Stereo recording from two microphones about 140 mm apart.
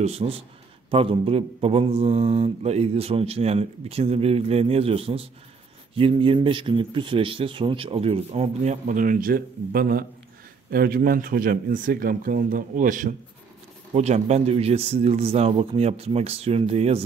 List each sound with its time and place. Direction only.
0.0 s speech: 45° right (ahead or behind); by 13.1 s 70° right (ahead or behind)
13.9 s speech: 50° right (ahead or behind)